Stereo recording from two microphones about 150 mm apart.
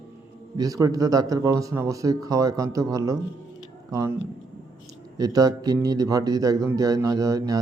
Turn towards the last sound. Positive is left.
turn(degrees=-25)  # may be behind; listen again after turning